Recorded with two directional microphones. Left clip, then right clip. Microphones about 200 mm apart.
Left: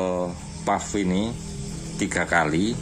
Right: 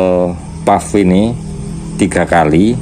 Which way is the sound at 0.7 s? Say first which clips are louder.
Right 14 dB; 25° right (ahead or behind).